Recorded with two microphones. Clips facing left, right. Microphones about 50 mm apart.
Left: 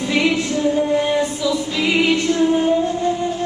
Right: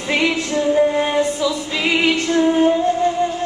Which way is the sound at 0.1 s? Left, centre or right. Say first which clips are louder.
Right 1 dB; right.